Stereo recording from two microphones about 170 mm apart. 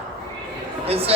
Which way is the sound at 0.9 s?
35° right (ahead or behind).